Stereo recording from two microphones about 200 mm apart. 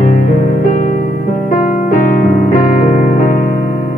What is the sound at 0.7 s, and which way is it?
Music, 35° left (ahead or behind).